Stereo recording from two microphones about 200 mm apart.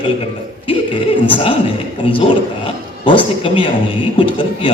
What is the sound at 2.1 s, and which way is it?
A man's voice, 25° left (ahead or behind).